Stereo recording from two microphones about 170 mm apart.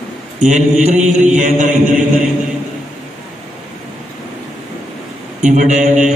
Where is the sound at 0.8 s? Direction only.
45° right (ahead or behind).